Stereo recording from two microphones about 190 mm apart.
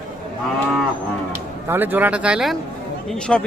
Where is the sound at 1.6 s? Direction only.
10° right (ahead or behind).